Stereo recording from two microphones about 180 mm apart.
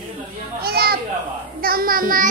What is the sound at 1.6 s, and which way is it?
Speech, 55° right (ahead or behind).